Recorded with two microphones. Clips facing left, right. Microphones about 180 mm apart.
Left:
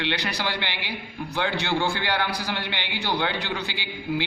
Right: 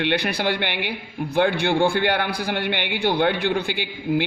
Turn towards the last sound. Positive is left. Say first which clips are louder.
# right 5 dB
turn(degrees=-55)  # may be behind; listen again after turning